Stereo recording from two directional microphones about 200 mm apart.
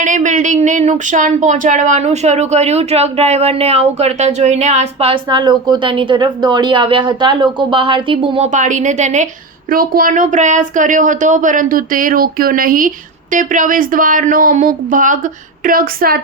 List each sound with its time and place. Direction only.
0.0 s speech: 40° right (ahead or behind)
8.5 s a woman's voice: 40° right (ahead or behind)